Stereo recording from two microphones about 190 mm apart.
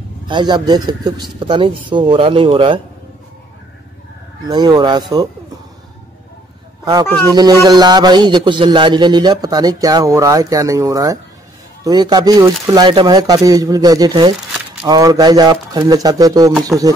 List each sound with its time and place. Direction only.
0.3 s a man's voice: 25° right (ahead or behind)
4.5 s a man's voice: 20° right (ahead or behind)
6.8 s a man's voice: 20° right (ahead or behind)